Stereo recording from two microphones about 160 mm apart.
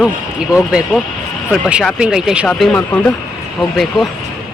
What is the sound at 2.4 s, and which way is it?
Speech, 10° left (ahead or behind).